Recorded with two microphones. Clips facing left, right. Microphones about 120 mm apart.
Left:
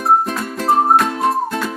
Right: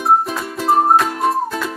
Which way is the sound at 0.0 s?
Centre (ahead or behind).